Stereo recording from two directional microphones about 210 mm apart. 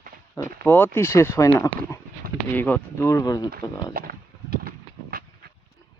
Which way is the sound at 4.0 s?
45° right (ahead or behind).